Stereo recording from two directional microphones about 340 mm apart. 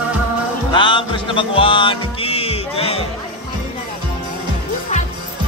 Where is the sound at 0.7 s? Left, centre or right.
Centre.